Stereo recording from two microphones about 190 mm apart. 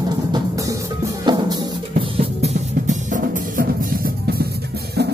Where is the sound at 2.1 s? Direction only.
40° right (ahead or behind).